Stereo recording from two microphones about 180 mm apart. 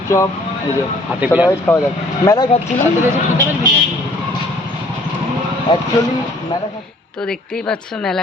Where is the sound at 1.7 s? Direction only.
10° left (ahead or behind).